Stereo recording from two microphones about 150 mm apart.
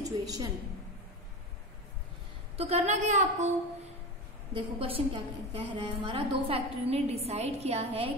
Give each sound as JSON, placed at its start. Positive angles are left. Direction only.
{"t": 0.0, "sound": "a woman's voice", "side_deg": -25}
{"t": 2.5, "sound": "a woman's voice", "side_deg": -40}
{"t": 4.7, "sound": "a woman's voice", "side_deg": -40}